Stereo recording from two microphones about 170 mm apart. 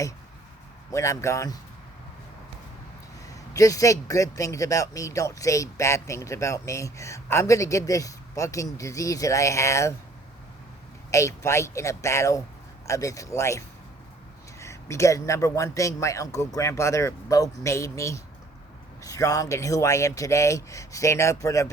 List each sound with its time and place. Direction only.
0.9 s speech: 20° left (ahead or behind)
3.5 s speech: 20° left (ahead or behind)
11.1 s a man's voice: 15° left (ahead or behind)